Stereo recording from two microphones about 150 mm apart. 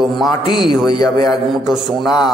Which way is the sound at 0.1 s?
35° left (ahead or behind).